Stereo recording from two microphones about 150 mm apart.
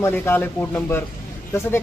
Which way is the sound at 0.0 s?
15° left (ahead or behind).